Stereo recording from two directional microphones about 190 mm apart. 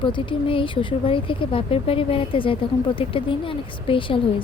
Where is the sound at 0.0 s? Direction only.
25° left (ahead or behind).